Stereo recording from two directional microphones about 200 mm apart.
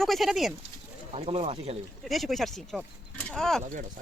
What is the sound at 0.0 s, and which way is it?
Speech, centre (ahead or behind).